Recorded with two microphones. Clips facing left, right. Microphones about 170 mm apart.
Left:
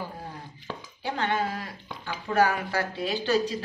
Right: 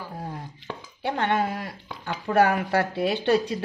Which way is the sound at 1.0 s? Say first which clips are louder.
Right 3 dB; 60° right (ahead or behind).